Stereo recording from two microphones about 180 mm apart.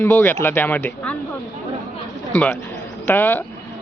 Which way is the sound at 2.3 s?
10° left (ahead or behind).